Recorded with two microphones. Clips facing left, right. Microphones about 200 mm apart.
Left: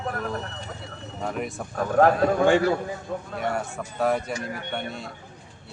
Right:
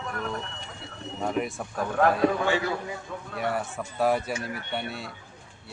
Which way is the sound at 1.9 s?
45° left (ahead or behind).